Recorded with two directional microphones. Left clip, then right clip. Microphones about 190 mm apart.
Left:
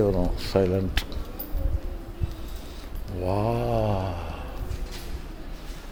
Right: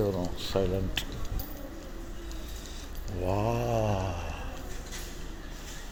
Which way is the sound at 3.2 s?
10° left (ahead or behind).